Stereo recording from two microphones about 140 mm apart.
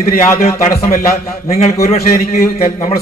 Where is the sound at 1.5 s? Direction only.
50° left (ahead or behind).